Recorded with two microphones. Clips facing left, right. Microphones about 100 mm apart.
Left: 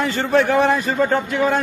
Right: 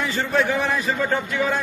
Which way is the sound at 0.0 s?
65° left (ahead or behind).